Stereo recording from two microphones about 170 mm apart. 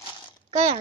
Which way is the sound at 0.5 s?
40° right (ahead or behind).